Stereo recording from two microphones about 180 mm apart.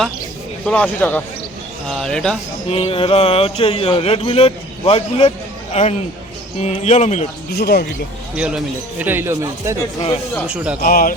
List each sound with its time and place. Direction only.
0.6 s speech: 10° left (ahead or behind)
2.6 s speech: 35° left (ahead or behind)
7.5 s speech: 60° left (ahead or behind)
8.4 s a man's voice: 5° right (ahead or behind)
10.8 s speech: 50° left (ahead or behind)